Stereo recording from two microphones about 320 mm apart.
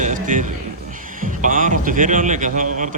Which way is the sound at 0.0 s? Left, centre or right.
Right.